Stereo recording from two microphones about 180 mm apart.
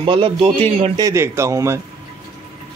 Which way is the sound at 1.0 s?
15° right (ahead or behind).